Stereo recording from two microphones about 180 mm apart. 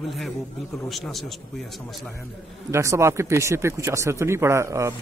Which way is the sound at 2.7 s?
15° right (ahead or behind).